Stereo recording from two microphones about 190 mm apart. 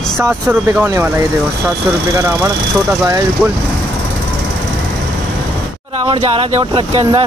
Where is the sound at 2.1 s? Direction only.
15° right (ahead or behind).